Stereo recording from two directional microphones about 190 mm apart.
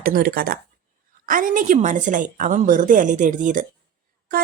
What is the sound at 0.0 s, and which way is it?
Speech, 50° right (ahead or behind).